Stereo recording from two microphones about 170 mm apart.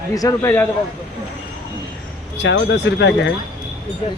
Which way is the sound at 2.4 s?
90° left.